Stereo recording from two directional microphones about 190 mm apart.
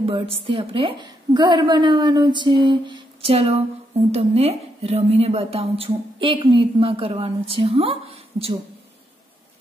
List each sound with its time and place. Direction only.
0.0 s a woman's voice: 30° right (ahead or behind)